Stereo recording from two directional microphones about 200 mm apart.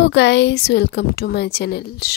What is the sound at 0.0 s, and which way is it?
Speech, 60° left (ahead or behind).